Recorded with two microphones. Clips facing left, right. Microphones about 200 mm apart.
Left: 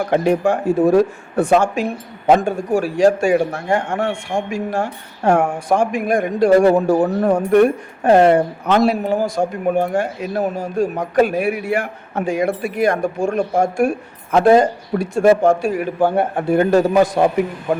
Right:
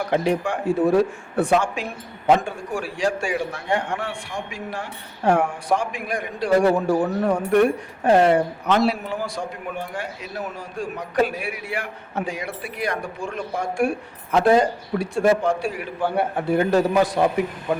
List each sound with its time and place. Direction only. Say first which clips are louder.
0.1 s speech: left 6 dB; 45° left (ahead or behind)